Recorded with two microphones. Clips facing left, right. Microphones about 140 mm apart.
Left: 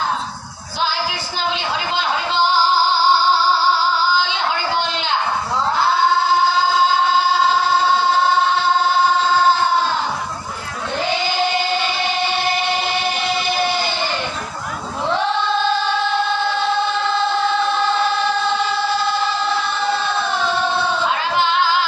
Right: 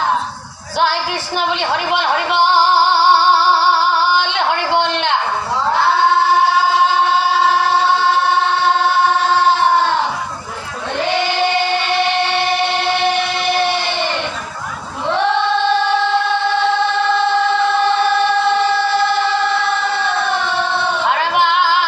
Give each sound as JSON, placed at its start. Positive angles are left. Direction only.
{"t": 1.4, "sound": "music", "side_deg": -65}
{"t": 11.2, "sound": "music", "side_deg": -70}
{"t": 21.1, "sound": "singing", "side_deg": -65}